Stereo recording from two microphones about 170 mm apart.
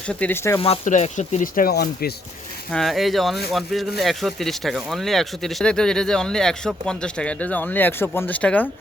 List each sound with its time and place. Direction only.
0.1 s speech: 10° left (ahead or behind)
0.9 s speech: 45° left (ahead or behind); by 2.1 s 65° left (ahead or behind)
2.7 s speech: centre (ahead or behind)